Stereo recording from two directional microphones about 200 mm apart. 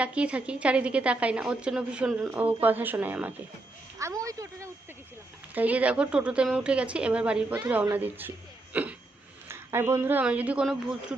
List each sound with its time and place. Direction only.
0.0 s a woman's voice: 5° right (ahead or behind)
8.7 s hiccup: 5° right (ahead or behind)
9.5 s speech: 10° right (ahead or behind)